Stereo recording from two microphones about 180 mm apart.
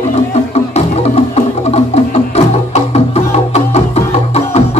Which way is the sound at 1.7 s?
35° left (ahead or behind).